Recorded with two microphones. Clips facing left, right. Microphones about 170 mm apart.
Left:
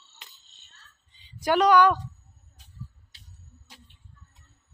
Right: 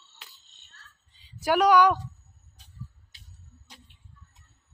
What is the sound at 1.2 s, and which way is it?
Speech, 10° right (ahead or behind).